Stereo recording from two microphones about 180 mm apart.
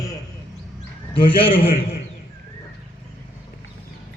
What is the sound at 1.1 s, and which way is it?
Speech, 30° left (ahead or behind).